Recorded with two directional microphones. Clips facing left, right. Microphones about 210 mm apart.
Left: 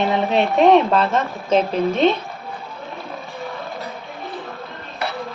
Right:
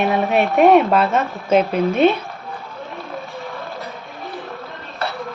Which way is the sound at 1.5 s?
15° right (ahead or behind).